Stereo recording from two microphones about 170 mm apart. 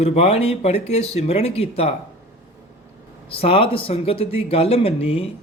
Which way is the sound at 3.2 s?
35° left (ahead or behind).